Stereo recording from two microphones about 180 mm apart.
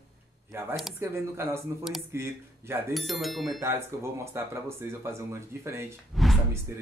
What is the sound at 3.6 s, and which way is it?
Speech, 15° right (ahead or behind).